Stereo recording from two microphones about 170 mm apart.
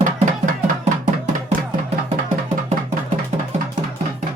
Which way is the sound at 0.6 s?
45° right (ahead or behind).